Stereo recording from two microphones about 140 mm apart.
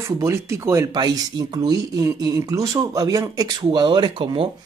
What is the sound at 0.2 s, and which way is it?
Speech, 20° right (ahead or behind).